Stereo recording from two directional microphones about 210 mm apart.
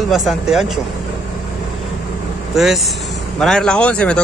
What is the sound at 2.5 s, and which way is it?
Speech, centre (ahead or behind).